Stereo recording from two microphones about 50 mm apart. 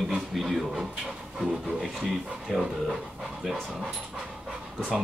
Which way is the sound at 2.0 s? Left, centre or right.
Centre.